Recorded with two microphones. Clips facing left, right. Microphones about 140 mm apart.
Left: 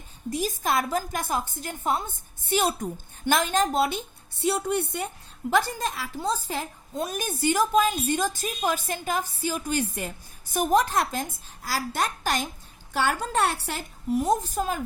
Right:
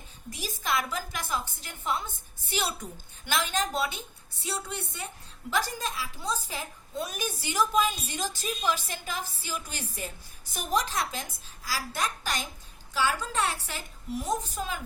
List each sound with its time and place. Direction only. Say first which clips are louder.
0.3 s a woman's voice: left 6 dB; 50° left (ahead or behind)